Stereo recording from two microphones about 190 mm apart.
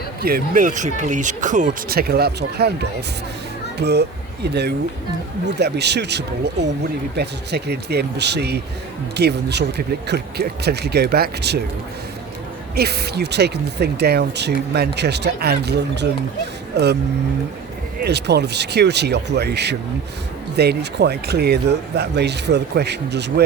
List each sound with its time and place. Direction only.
0.2 s speech: 50° right (ahead or behind)
12.7 s speech: 55° right (ahead or behind)
18.0 s speech: 60° right (ahead or behind)